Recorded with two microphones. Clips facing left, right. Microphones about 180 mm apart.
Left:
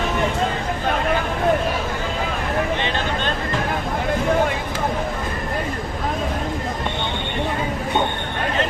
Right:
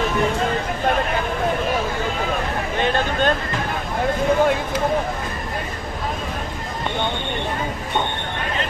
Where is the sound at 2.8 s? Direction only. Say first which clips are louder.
Right 4 dB; 50° right (ahead or behind).